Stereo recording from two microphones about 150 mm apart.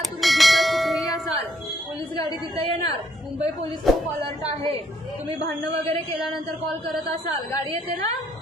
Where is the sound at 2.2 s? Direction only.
25° left (ahead or behind).